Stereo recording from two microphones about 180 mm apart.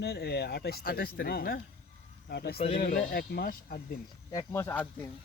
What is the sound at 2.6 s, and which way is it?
Speech, 35° left (ahead or behind).